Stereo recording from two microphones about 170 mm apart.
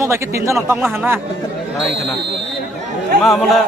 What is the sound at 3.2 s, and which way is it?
Speech, centre (ahead or behind).